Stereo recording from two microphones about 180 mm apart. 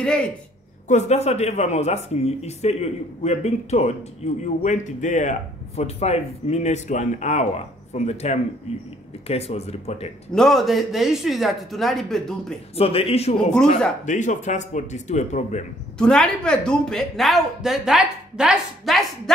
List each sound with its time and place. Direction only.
0.0 s speech: 5° left (ahead or behind)
0.8 s speech: 40° left (ahead or behind)
10.3 s speech: centre (ahead or behind)
12.7 s speech: 30° left (ahead or behind)
16.0 s speech: 5° left (ahead or behind)